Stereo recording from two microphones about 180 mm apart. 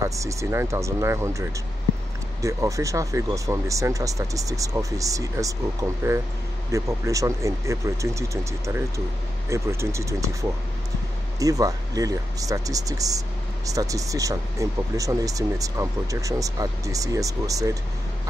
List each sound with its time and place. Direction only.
0.0 s speech: 15° right (ahead or behind)
2.4 s speech: 15° right (ahead or behind)
11.3 s speech: 20° right (ahead or behind)